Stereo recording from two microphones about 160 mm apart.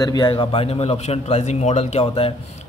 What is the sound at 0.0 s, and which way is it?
Speech, 25° left (ahead or behind).